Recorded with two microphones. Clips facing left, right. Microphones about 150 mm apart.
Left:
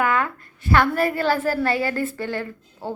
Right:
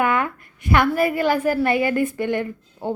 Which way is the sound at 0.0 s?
20° right (ahead or behind).